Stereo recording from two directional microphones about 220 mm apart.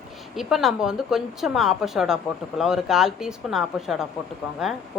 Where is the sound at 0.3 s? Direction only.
Centre (ahead or behind).